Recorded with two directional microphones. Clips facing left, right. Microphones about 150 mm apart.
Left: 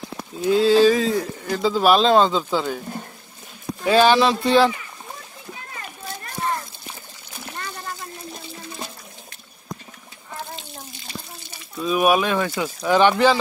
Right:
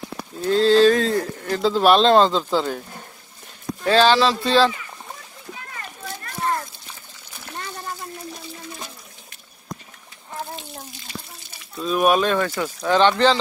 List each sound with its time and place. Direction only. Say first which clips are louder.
0.4 s speech: even; 10° left (ahead or behind)
3.8 s speech: left 1 dB; 15° left (ahead or behind)
11.8 s speech: even; 5° left (ahead or behind)